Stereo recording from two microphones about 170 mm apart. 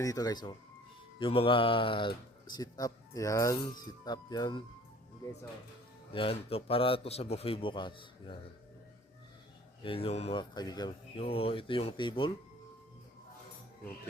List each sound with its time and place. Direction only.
0.0 s speech: 20° left (ahead or behind)
6.1 s a man's voice: 35° left (ahead or behind)
9.8 s a man's voice: 35° left (ahead or behind)
10.5 s speech: 25° left (ahead or behind)